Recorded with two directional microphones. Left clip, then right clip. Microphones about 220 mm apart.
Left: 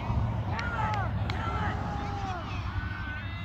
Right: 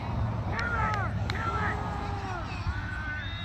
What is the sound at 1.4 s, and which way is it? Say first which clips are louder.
Vehicle: right 3 dB; 40° left (ahead or behind).